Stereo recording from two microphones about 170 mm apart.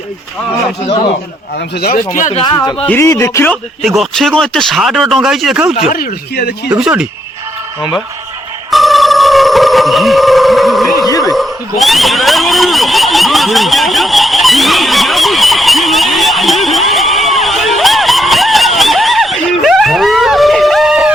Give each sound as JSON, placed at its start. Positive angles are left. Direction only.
{"t": 2.1, "sound": "speech", "side_deg": 45}
{"t": 2.4, "sound": "speech", "side_deg": 25}
{"t": 2.8, "sound": "speech", "side_deg": 15}
{"t": 3.8, "sound": "speech", "side_deg": 0}
{"t": 5.9, "sound": "speech", "side_deg": 60}
{"t": 6.7, "sound": "speech", "side_deg": -5}
{"t": 7.8, "sound": "speech", "side_deg": 25}
{"t": 8.7, "sound": "a sound", "side_deg": 0}
{"t": 11.0, "sound": "a sound", "side_deg": 20}
{"t": 11.3, "sound": "a sound", "side_deg": 0}